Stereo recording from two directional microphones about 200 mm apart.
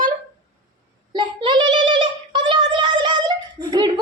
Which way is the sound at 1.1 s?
25° right (ahead or behind).